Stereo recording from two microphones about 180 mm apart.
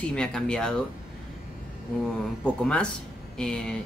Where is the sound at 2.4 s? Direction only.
5° left (ahead or behind).